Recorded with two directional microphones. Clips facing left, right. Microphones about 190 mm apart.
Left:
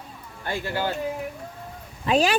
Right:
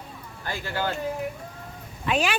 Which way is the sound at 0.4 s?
20° left (ahead or behind).